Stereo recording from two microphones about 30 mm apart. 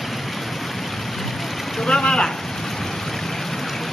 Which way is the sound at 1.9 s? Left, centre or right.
Left.